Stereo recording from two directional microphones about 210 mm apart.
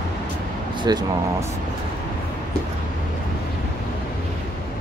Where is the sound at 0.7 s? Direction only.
20° right (ahead or behind).